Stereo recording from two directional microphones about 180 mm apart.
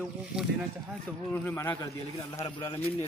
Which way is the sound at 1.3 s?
10° left (ahead or behind).